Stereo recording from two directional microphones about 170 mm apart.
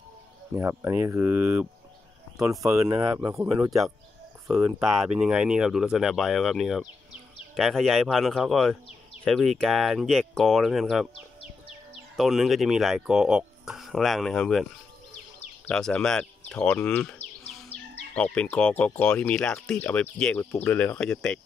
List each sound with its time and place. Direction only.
0.6 s speech: 15° right (ahead or behind)
4.6 s speech: 5° right (ahead or behind)
12.2 s speech: centre (ahead or behind)